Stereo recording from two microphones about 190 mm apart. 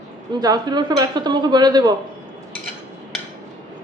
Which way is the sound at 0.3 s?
20° right (ahead or behind).